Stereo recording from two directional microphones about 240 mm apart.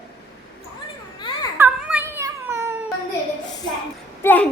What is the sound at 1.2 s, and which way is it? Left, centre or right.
Baby cry, centre.